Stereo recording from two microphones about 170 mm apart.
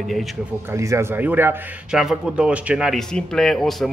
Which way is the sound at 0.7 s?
15° right (ahead or behind).